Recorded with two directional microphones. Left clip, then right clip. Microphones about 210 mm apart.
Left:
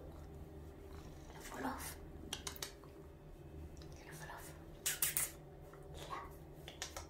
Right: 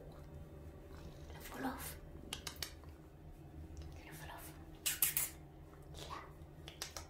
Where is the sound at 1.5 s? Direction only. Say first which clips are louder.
Even; 15° right (ahead or behind).